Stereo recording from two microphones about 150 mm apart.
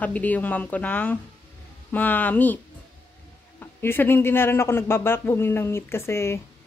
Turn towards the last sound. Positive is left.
turn(degrees=20)  # may be behind; listen again after turning